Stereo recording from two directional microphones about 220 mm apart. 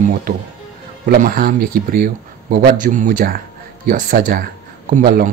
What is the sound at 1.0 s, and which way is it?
Speech, 40° right (ahead or behind).